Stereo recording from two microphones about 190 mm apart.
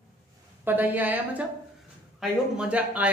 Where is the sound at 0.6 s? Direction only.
10° right (ahead or behind).